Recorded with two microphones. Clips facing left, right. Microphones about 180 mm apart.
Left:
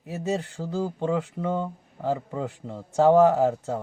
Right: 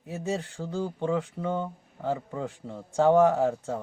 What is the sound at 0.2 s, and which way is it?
Speech, 15° left (ahead or behind).